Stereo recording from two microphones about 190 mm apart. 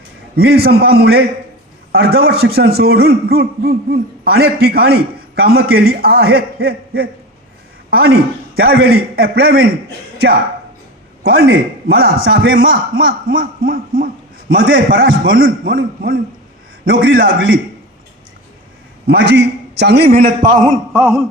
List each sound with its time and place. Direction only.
0.3 s a man's voice: 55° right (ahead or behind)
11.2 s a man's voice: 55° right (ahead or behind)
19.0 s a man's voice: 60° right (ahead or behind)
20.9 s a sound: 5° right (ahead or behind)